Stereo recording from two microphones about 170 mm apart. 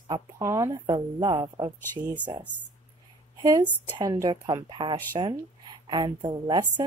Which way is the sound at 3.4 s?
25° right (ahead or behind).